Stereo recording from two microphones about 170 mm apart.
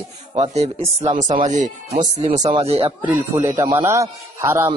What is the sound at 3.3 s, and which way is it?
A man's voice, 20° right (ahead or behind).